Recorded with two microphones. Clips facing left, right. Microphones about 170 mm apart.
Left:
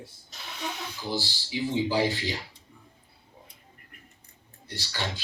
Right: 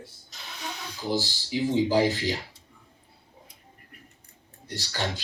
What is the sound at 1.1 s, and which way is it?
Speech, 45° right (ahead or behind).